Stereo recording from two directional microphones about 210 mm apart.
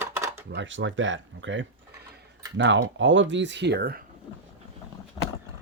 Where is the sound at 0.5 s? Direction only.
60° right (ahead or behind).